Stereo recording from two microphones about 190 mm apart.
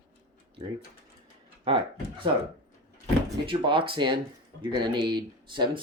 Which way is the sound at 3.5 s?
25° right (ahead or behind).